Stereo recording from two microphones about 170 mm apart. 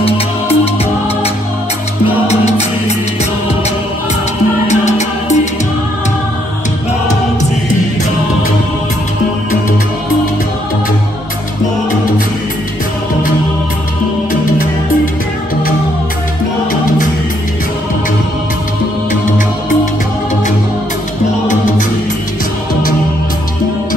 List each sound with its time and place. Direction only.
2.2 s music: 40° left (ahead or behind)
4.6 s music: 45° left (ahead or behind)